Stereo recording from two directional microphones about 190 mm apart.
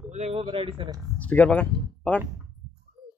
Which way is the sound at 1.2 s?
10° left (ahead or behind).